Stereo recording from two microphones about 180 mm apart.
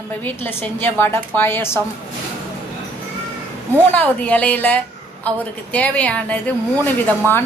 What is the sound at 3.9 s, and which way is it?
A woman's voice, 10° left (ahead or behind).